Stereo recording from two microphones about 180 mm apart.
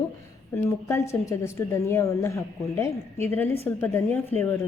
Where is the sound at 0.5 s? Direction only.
15° left (ahead or behind).